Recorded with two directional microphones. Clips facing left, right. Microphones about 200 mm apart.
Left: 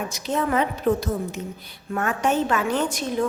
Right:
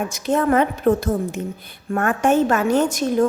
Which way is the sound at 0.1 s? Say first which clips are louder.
Right 6 dB; 50° right (ahead or behind).